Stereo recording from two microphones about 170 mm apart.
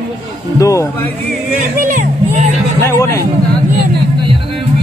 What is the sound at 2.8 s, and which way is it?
Speech, 15° left (ahead or behind).